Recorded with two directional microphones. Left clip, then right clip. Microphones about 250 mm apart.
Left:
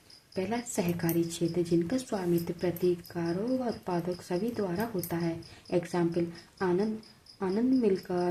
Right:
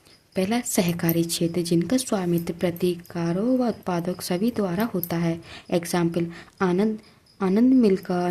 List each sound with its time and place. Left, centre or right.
0.3 s a woman's voice: right